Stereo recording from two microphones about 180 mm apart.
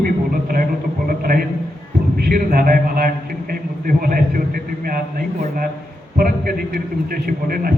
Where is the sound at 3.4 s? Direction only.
50° right (ahead or behind).